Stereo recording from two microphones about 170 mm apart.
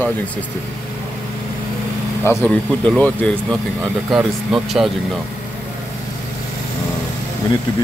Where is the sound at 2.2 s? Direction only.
5° left (ahead or behind).